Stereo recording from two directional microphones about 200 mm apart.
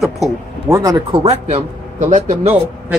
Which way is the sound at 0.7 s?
15° right (ahead or behind).